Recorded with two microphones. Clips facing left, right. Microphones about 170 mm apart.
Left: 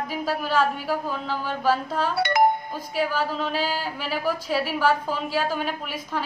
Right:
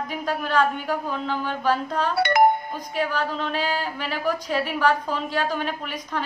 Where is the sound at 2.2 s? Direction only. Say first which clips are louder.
Right 2 dB; 55° right (ahead or behind).